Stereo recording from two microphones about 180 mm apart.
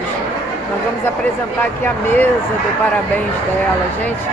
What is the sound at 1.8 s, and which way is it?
Speech, 10° left (ahead or behind).